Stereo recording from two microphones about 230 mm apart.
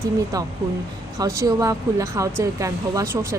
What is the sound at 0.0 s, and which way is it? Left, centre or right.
Speech, centre.